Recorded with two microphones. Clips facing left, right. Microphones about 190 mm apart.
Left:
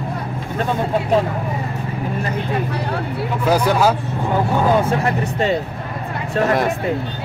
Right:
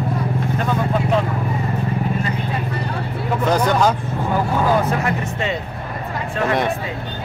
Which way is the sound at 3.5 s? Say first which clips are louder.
Left 2 dB; 5° left (ahead or behind).